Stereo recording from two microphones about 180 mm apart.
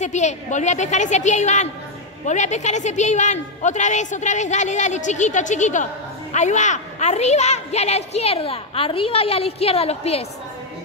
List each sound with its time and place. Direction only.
0.0 s a woman's voice: 40° left (ahead or behind)